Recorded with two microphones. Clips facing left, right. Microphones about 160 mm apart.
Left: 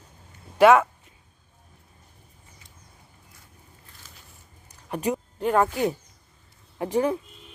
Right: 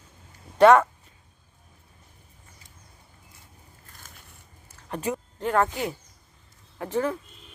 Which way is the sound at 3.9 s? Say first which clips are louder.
Right 3 dB; 50° right (ahead or behind).